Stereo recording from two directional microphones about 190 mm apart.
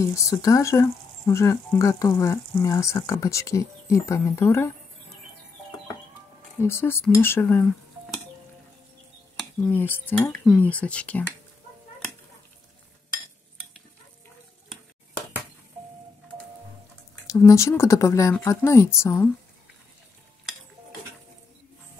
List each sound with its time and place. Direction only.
0.0 s speech: 15° left (ahead or behind)
6.6 s speech: 10° left (ahead or behind)
9.4 s cutlery: 5° left (ahead or behind)
10.4 s speech: 5° left (ahead or behind)
17.3 s speech: 15° left (ahead or behind)